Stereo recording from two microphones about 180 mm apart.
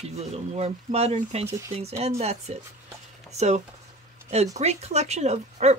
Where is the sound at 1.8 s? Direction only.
35° right (ahead or behind).